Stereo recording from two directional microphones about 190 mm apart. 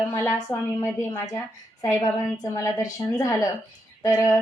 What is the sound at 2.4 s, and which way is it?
Speech, 15° left (ahead or behind).